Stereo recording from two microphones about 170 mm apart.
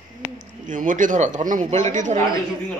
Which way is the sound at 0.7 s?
50° right (ahead or behind).